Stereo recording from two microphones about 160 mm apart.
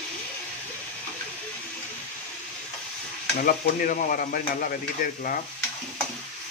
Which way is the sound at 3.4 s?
60° left (ahead or behind).